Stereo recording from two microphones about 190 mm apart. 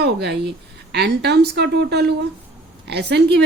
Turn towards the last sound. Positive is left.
turn(degrees=-60)  # may be behind; listen again after turning